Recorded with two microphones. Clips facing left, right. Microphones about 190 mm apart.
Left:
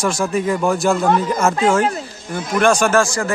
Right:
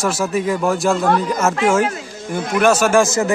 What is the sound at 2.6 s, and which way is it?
Speech, 5° right (ahead or behind).